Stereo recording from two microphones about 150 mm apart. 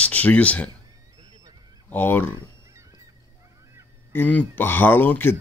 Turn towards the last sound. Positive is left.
turn(degrees=15)  # may be behind; listen again after turning